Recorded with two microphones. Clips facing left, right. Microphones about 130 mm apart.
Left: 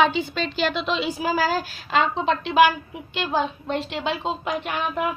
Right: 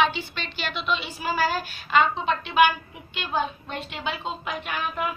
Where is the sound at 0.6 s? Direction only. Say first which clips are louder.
Left 4 dB; 90° left; by 5.1 s 60° left (ahead or behind).